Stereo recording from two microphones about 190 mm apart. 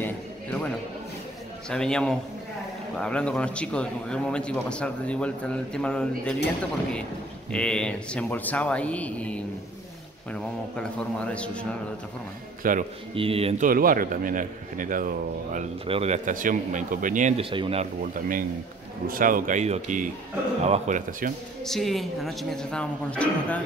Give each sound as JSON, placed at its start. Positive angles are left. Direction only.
{"t": 0.0, "sound": "music", "side_deg": 5}
{"t": 1.7, "sound": "a man's voice", "side_deg": 5}
{"t": 7.5, "sound": "a man's voice", "side_deg": 5}
{"t": 12.6, "sound": "a man's voice", "side_deg": -45}
{"t": 13.1, "sound": "speech", "side_deg": -30}
{"t": 13.7, "sound": "a man's voice", "side_deg": -45}
{"t": 19.0, "sound": "a man's voice", "side_deg": -45}
{"t": 21.6, "sound": "a man's voice", "side_deg": 0}